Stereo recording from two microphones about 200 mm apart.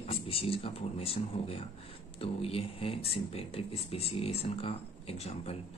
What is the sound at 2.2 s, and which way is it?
A man's voice, 30° left (ahead or behind).